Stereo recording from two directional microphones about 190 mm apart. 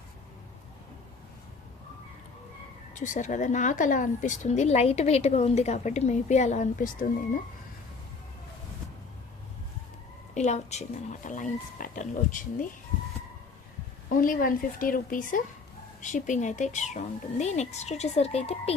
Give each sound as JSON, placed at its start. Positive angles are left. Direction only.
{"t": 2.9, "sound": "speech", "side_deg": 40}
{"t": 10.3, "sound": "speech", "side_deg": 35}
{"t": 14.2, "sound": "speech", "side_deg": 45}